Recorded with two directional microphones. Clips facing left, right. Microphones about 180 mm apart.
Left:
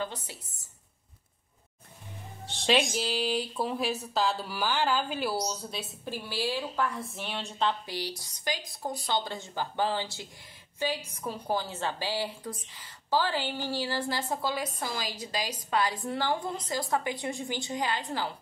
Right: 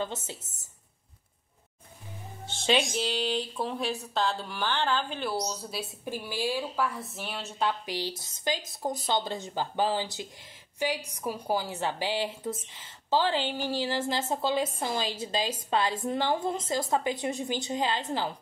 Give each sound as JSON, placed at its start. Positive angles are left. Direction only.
{"t": 0.0, "sound": "a woman's voice", "side_deg": -25}
{"t": 2.4, "sound": "speech", "side_deg": 0}
{"t": 6.0, "sound": "a woman's voice", "side_deg": -15}
{"t": 7.9, "sound": "a woman's voice", "side_deg": -20}